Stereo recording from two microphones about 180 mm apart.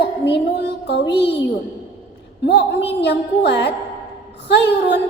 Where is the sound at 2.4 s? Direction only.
70° left (ahead or behind).